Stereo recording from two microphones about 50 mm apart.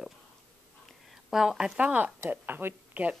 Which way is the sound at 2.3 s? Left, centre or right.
Right.